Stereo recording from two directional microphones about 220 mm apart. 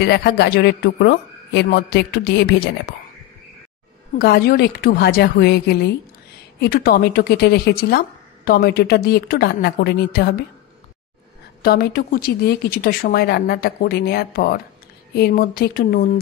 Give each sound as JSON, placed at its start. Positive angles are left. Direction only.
{"t": 0.0, "sound": "a woman's voice", "side_deg": 50}
{"t": 4.2, "sound": "a woman's voice", "side_deg": 45}
{"t": 11.6, "sound": "a woman's voice", "side_deg": 45}